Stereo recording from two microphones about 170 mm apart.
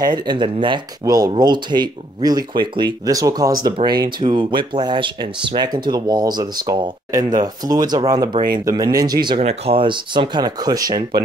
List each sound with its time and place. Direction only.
0.0 s speech: 25° right (ahead or behind)
9.4 s speech: 35° right (ahead or behind)